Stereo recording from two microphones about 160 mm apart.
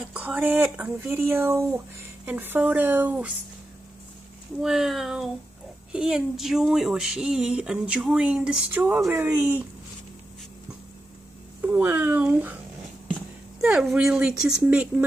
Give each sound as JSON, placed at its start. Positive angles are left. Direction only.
{"t": 0.0, "sound": "speech", "side_deg": -5}
{"t": 4.6, "sound": "speech", "side_deg": 0}
{"t": 11.7, "sound": "speech", "side_deg": -10}
{"t": 13.6, "sound": "speech", "side_deg": -5}